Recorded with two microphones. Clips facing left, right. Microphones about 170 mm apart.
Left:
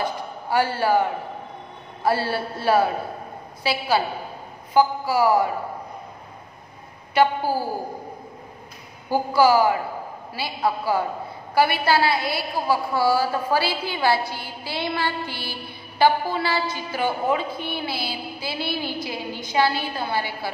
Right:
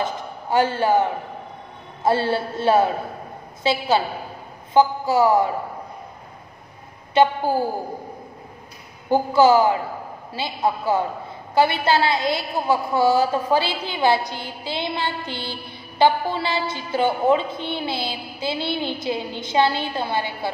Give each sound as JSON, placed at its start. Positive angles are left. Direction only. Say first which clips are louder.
{"t": 0.0, "sound": "a sound", "louder": "right 1 dB", "side_deg": -20}
{"t": 2.0, "sound": "a woman's voice", "louder": "right 3 dB", "side_deg": -25}
{"t": 7.2, "sound": "a woman's voice", "louder": "right 2 dB", "side_deg": -25}
{"t": 9.1, "sound": "a woman's voice", "louder": "right 3 dB", "side_deg": -25}